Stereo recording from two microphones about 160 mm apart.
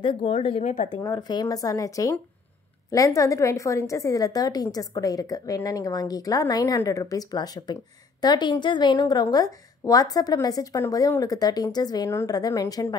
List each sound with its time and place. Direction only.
0.0 s speech: 35° left (ahead or behind)
0.8 s a woman's voice: 25° left (ahead or behind)